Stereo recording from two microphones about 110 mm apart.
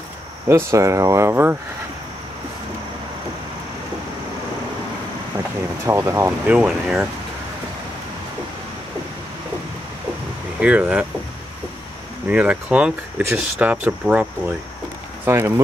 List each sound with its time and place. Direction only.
0.5 s speech: 25° right (ahead or behind)
5.9 s speech: 25° right (ahead or behind)
6.4 s speech: 10° right (ahead or behind)
10.6 s speech: 15° right (ahead or behind)
12.3 s speech: 10° right (ahead or behind)
15.2 s speech: 25° right (ahead or behind)